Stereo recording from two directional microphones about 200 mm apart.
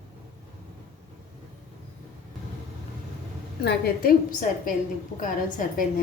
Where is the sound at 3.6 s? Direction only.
50° left (ahead or behind).